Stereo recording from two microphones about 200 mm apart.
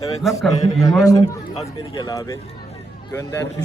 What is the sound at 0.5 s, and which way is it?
A man's voice, 15° left (ahead or behind).